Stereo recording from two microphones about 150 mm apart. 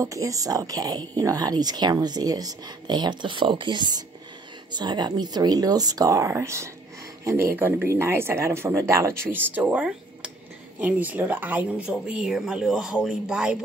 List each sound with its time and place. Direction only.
0.0 s speech: 20° right (ahead or behind); by 13.6 s 5° right (ahead or behind)